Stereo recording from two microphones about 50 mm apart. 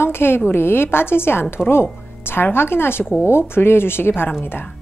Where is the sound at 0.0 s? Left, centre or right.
Left.